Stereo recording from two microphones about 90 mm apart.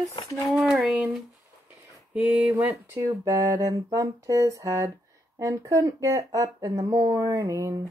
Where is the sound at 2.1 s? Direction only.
15° right (ahead or behind).